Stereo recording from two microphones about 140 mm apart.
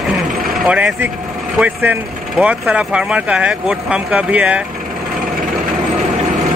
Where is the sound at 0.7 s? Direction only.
10° right (ahead or behind).